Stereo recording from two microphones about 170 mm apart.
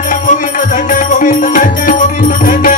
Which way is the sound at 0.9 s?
50° left (ahead or behind).